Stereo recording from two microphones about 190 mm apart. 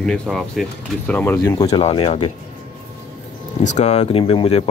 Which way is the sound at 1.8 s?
30° left (ahead or behind).